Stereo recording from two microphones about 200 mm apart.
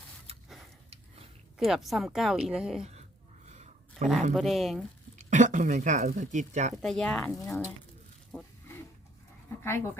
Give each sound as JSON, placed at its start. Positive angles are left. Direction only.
{"t": 1.5, "sound": "speech", "side_deg": 0}
{"t": 3.5, "sound": "a sound", "side_deg": -35}
{"t": 4.4, "sound": "speech", "side_deg": 0}
{"t": 5.1, "sound": "speech", "side_deg": -40}
{"t": 6.8, "sound": "speech", "side_deg": 5}
{"t": 8.3, "sound": "wild animals", "side_deg": 5}
{"t": 9.6, "sound": "speech", "side_deg": 15}